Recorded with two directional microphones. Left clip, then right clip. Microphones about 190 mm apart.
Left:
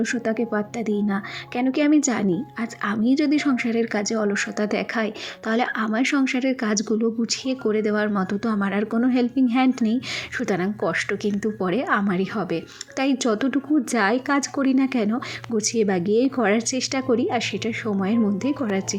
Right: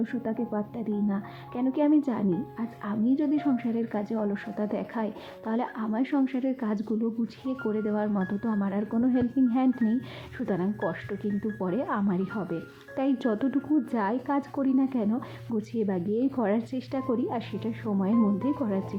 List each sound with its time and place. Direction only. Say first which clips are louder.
0.0 s a woman's voice: left 8 dB; 15° left (ahead or behind)